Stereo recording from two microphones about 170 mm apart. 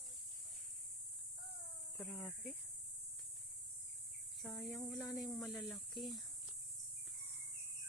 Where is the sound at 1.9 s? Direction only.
15° left (ahead or behind).